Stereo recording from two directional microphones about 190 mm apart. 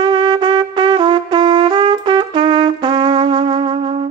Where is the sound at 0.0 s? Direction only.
20° right (ahead or behind).